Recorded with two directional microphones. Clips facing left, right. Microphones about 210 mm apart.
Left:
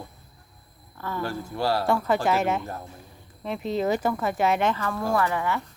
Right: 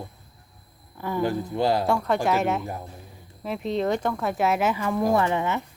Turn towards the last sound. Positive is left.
turn(degrees=-20)  # may be behind; listen again after turning